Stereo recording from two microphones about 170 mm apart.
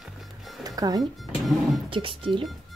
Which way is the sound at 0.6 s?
20° right (ahead or behind).